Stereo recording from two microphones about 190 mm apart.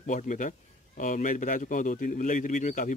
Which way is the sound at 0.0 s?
40° left (ahead or behind).